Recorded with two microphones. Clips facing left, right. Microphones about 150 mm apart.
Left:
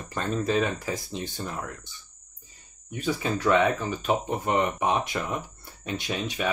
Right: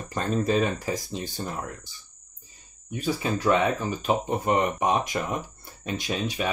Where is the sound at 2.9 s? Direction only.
30° right (ahead or behind).